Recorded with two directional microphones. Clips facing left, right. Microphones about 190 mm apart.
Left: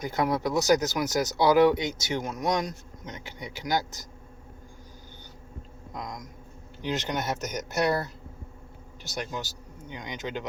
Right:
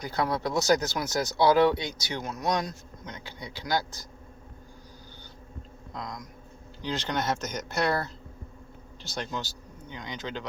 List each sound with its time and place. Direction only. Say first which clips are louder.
0.0 s speech: left 2 dB; 20° left (ahead or behind)
5.9 s speech: left 1 dB; 20° left (ahead or behind)
9.1 s speech: even; 15° left (ahead or behind)